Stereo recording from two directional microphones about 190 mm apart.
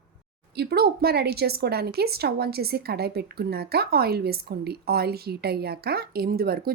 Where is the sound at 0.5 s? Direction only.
60° right (ahead or behind).